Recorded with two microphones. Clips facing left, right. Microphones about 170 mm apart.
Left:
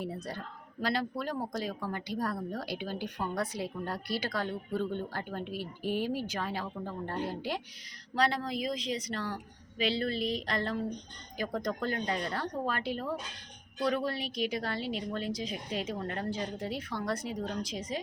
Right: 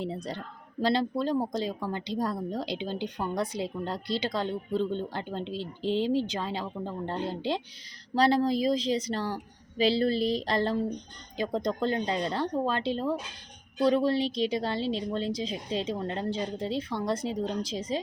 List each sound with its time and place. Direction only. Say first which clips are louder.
0.0 s a woman's voice: right 4 dB; 20° right (ahead or behind)